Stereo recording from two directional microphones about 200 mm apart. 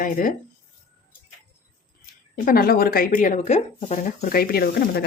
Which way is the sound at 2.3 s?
45° left (ahead or behind).